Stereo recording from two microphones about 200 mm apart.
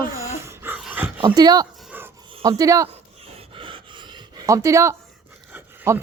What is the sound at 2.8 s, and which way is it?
Pant, 30° right (ahead or behind).